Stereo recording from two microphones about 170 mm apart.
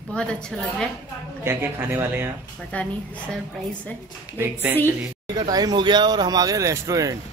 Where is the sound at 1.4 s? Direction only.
10° right (ahead or behind).